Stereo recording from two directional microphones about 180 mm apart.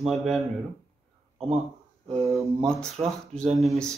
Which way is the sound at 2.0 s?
Centre (ahead or behind).